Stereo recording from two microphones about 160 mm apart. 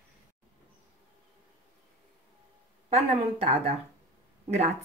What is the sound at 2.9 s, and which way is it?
Speech, 40° right (ahead or behind).